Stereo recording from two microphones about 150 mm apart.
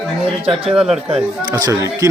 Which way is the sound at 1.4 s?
25° right (ahead or behind).